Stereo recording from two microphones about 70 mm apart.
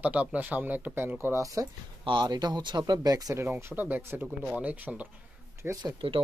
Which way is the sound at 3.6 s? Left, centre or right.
Right.